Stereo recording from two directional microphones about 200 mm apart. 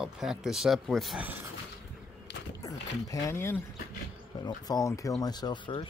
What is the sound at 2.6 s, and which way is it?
Speech, 15° left (ahead or behind).